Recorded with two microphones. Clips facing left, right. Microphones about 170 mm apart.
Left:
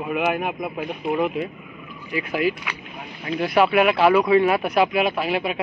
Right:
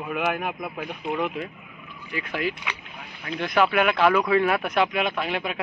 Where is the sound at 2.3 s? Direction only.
10° left (ahead or behind).